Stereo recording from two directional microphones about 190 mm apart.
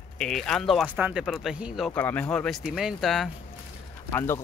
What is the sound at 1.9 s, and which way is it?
Speech, 10° left (ahead or behind).